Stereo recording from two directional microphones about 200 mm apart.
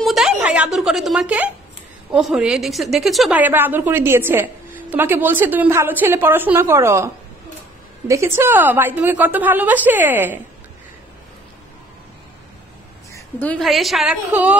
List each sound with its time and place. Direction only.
0.0 s a sound: centre (ahead or behind)
2.0 s a woman's voice: 5° right (ahead or behind)
8.1 s a woman's voice: 15° right (ahead or behind)
13.1 s a woman's voice: 10° left (ahead or behind)